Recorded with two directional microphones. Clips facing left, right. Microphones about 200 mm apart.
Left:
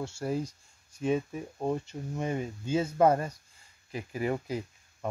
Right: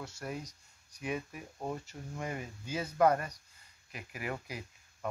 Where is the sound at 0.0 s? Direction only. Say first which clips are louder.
Left 9 dB; 30° left (ahead or behind).